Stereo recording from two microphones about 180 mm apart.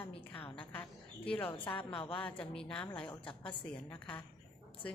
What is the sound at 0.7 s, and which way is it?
A woman's voice, 10° left (ahead or behind).